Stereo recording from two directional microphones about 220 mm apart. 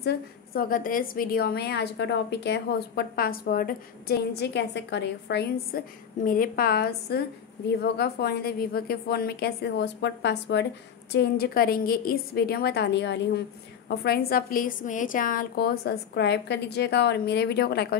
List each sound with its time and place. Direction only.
0.0 s a woman's voice: 45° left (ahead or behind)